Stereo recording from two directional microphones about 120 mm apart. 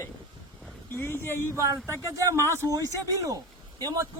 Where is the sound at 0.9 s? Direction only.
20° left (ahead or behind).